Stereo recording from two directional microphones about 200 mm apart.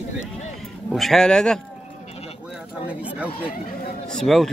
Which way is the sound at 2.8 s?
5° right (ahead or behind).